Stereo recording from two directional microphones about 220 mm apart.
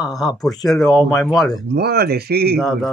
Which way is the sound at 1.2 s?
Centre (ahead or behind).